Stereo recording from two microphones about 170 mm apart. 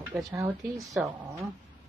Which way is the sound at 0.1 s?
15° right (ahead or behind).